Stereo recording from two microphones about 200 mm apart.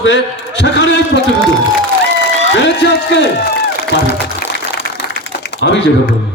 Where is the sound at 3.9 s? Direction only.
60° left (ahead or behind).